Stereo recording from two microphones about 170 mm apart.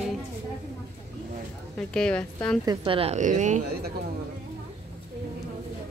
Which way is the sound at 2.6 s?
25° right (ahead or behind).